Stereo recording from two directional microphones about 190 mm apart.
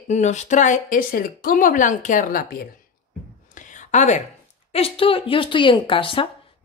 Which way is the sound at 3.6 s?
40° left (ahead or behind).